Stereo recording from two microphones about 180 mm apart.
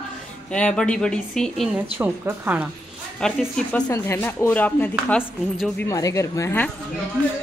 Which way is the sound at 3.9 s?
15° left (ahead or behind).